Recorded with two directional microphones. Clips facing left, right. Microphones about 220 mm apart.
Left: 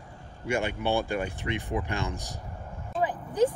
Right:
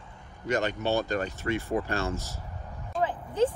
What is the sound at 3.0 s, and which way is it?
Vehicle, 15° left (ahead or behind).